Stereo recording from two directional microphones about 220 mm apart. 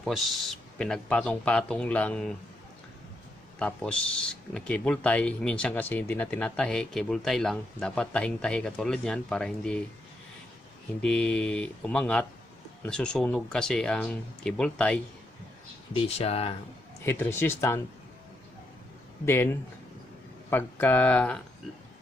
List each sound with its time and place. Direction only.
0.0 s speech: centre (ahead or behind)
3.5 s speech: 5° left (ahead or behind)
11.0 s speech: 5° left (ahead or behind)
15.9 s speech: 25° left (ahead or behind)
17.0 s speech: 10° left (ahead or behind)
19.2 s speech: 10° left (ahead or behind)